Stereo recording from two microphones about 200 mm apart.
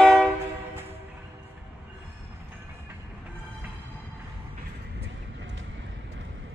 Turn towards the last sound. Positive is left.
turn(degrees=-70)  # may be behind; listen again after turning